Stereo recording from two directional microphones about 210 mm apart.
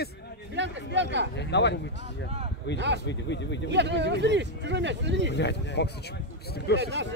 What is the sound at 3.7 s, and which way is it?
Speech, 55° right (ahead or behind).